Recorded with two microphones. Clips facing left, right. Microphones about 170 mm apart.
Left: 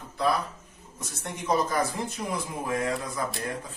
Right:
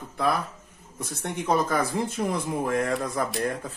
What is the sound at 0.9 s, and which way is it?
Speech, 60° right (ahead or behind).